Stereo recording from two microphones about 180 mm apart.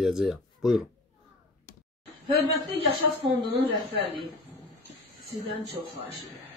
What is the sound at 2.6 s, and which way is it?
Speech, 30° right (ahead or behind).